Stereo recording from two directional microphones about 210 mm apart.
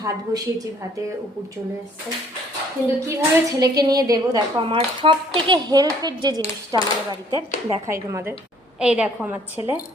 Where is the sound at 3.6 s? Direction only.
15° right (ahead or behind).